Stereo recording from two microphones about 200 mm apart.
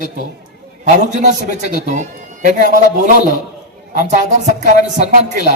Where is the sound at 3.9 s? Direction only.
40° right (ahead or behind).